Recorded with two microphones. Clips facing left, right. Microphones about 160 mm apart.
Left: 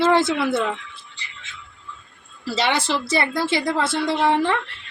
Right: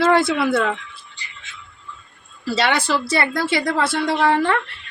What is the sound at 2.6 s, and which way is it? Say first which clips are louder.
Speech: right 2 dB; 25° left (ahead or behind).